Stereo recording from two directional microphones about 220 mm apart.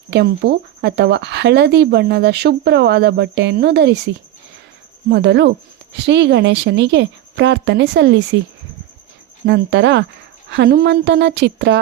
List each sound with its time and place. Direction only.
0.1 s speech: 50° right (ahead or behind)
5.0 s speech: 50° right (ahead or behind)
9.5 s speech: 55° right (ahead or behind)